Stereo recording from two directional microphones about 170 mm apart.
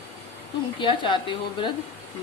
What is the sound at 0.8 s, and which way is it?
Speech, 30° left (ahead or behind).